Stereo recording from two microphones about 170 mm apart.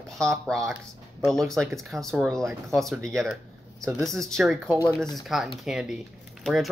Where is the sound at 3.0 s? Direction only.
15° right (ahead or behind).